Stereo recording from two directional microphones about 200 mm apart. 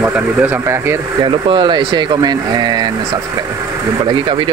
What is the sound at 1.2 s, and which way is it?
Speech, 25° right (ahead or behind).